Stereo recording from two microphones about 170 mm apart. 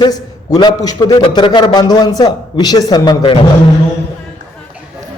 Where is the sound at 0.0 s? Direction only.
25° left (ahead or behind).